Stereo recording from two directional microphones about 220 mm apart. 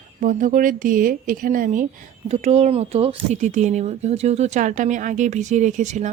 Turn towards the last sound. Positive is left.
turn(degrees=-35)  # may be behind; listen again after turning